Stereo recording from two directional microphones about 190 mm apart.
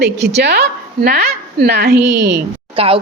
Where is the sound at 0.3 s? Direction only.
60° right (ahead or behind).